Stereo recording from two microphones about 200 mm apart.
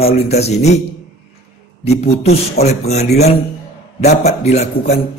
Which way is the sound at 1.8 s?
30° left (ahead or behind).